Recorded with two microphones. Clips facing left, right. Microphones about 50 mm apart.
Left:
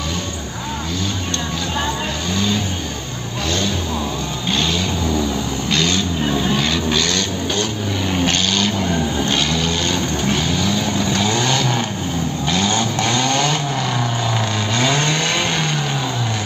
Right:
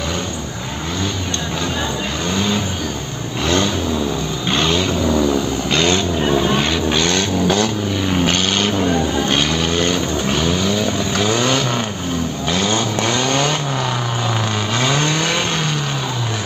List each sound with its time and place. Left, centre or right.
4.5 s vehicle: right
6.2 s music: centre
8.1 s vehicle: centre
8.5 s a sound: right
11.1 s vehicle: centre
14.8 s vehicle: centre